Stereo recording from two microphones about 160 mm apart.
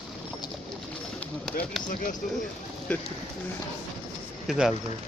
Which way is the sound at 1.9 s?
55° left (ahead or behind).